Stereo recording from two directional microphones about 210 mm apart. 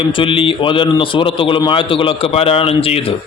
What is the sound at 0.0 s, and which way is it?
A man's voice, 25° left (ahead or behind).